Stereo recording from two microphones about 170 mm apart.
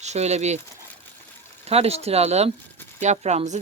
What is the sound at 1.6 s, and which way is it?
Speech, 35° right (ahead or behind).